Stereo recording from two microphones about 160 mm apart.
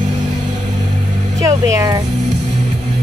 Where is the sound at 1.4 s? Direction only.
20° right (ahead or behind).